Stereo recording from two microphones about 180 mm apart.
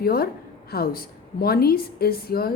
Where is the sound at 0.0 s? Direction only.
55° left (ahead or behind).